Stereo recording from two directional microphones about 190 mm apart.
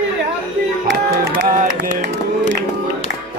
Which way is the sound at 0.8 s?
60° right (ahead or behind).